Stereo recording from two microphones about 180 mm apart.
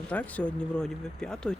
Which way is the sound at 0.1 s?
10° left (ahead or behind).